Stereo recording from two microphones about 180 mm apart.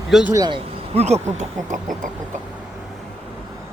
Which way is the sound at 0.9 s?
35° right (ahead or behind).